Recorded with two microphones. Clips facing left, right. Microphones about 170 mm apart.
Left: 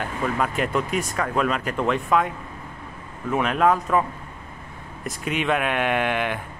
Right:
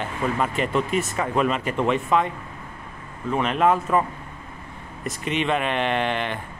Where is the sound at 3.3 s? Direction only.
Centre (ahead or behind).